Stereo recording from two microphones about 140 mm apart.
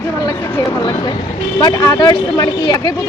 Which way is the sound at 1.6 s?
25° left (ahead or behind).